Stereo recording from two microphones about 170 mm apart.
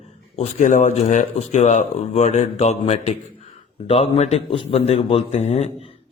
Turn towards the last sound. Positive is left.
turn(degrees=40)  # may be behind; listen again after turning